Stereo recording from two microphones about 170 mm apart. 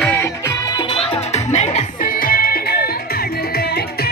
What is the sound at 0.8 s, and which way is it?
Music, 35° left (ahead or behind).